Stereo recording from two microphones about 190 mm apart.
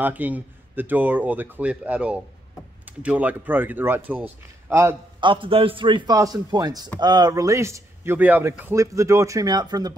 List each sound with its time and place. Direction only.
0.0 s speech: 10° right (ahead or behind)
5.2 s speech: 25° right (ahead or behind)